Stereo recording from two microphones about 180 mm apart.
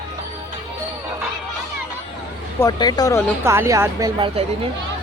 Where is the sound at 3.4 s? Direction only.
15° right (ahead or behind).